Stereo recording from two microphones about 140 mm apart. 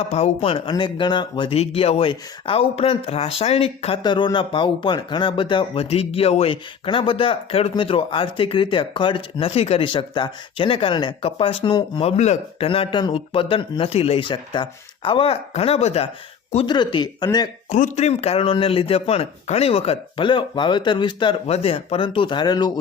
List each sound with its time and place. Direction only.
0.1 s speech: 45° left (ahead or behind)
4.0 s speech: 35° left (ahead or behind)
16.6 s speech: 30° left (ahead or behind)
17.7 s speech: 60° left (ahead or behind); by 21.3 s 35° left (ahead or behind)
21.4 s speech: 45° left (ahead or behind); by 22.7 s 30° left (ahead or behind)